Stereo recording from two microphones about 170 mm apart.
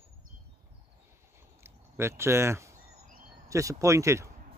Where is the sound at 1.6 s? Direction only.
15° right (ahead or behind).